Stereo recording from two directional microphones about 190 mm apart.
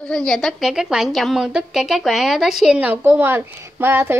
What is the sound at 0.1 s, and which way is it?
A woman's voice, centre (ahead or behind).